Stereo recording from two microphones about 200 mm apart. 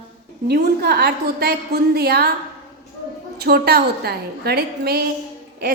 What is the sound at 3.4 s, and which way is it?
A woman's voice, 50° right (ahead or behind).